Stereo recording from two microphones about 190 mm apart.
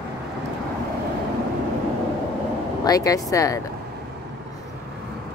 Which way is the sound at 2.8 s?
20° left (ahead or behind).